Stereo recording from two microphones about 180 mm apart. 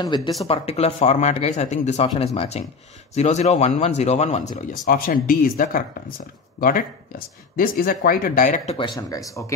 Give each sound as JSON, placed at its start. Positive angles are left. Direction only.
{"t": 0.0, "sound": "speech", "side_deg": 25}
{"t": 0.5, "sound": "speech", "side_deg": 35}
{"t": 8.7, "sound": "speech", "side_deg": 20}